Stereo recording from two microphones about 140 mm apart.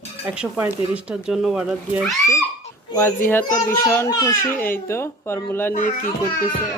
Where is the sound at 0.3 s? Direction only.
10° right (ahead or behind).